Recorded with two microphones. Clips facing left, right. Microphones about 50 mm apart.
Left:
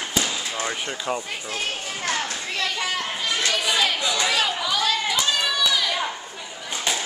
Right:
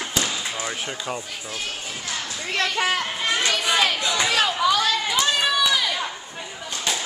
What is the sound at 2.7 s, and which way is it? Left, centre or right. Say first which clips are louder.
Speech: right 3 dB; right.